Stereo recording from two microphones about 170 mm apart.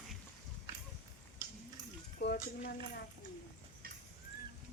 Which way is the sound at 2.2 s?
70° left (ahead or behind).